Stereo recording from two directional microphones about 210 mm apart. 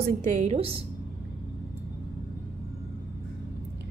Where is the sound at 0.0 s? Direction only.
35° right (ahead or behind).